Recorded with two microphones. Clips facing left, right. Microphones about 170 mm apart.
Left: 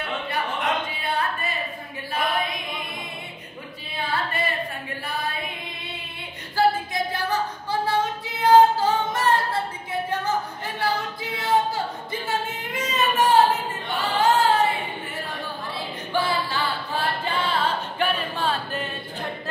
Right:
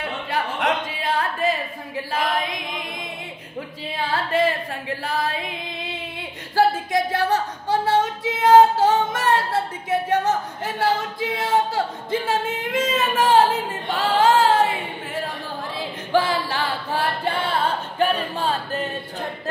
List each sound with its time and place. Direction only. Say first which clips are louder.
0.3 s a sound: right 4 dB; 90° right
2.1 s chant: right 1 dB; 90° right
3.9 s singing: right 5 dB; 90° right
6.5 s female singing: right 3 dB; 80° right
16.1 s singing: right 4 dB; 90° right; by 17.6 s 55° right (ahead or behind)
17.9 s music: right 4 dB; 40° right (ahead or behind)